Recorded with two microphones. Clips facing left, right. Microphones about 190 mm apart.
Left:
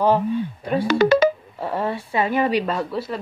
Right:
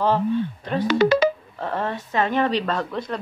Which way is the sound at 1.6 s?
10° left (ahead or behind).